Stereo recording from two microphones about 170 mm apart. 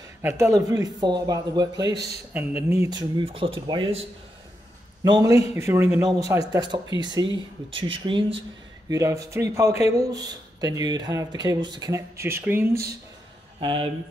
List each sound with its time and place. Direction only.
0.2 s speech: 15° right (ahead or behind)
8.8 s speech: 20° right (ahead or behind)
13.6 s speech: 30° right (ahead or behind)